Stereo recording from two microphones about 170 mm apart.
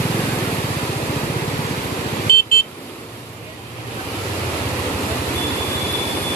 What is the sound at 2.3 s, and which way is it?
Vehicle, 60° left (ahead or behind).